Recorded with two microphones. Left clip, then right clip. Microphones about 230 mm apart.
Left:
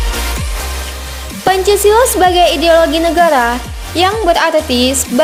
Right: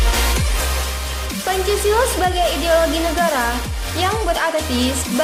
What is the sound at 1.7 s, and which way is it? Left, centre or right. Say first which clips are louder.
Speech: left 8 dB; left.